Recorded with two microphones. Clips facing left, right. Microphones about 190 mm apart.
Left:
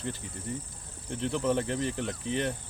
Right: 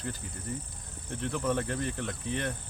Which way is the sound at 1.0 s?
30° left (ahead or behind).